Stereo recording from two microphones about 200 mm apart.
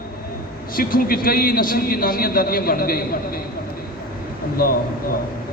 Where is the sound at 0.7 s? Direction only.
45° left (ahead or behind).